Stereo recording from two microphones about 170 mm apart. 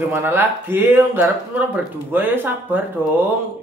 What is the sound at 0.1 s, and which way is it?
Speech, 15° right (ahead or behind).